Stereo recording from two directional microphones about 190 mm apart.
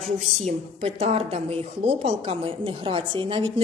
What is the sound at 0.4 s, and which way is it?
A woman's voice, 30° right (ahead or behind).